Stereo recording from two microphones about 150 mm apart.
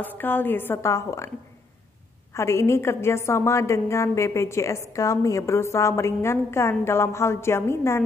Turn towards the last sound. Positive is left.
turn(degrees=15)  # may be behind; listen again after turning